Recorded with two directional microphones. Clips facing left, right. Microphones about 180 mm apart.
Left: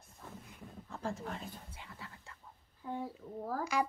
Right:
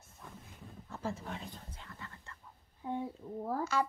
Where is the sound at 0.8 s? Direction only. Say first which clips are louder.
Even; centre (ahead or behind).